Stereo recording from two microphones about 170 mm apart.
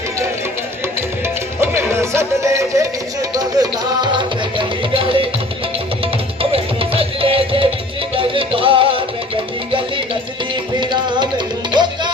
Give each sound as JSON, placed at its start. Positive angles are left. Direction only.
{"t": 1.6, "sound": "music", "side_deg": -15}
{"t": 6.9, "sound": "music", "side_deg": -35}
{"t": 10.8, "sound": "music", "side_deg": -25}